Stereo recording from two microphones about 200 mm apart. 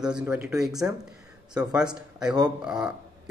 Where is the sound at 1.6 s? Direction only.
20° right (ahead or behind).